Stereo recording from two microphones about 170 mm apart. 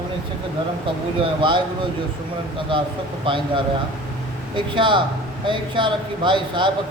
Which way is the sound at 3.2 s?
30° right (ahead or behind).